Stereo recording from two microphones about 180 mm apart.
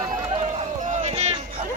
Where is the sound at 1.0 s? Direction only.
35° right (ahead or behind).